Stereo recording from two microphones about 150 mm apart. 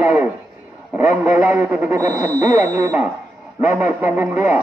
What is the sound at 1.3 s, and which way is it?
Speech, 20° right (ahead or behind).